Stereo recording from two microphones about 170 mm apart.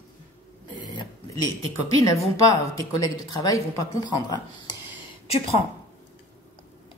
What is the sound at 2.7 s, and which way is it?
A woman's voice, 25° left (ahead or behind).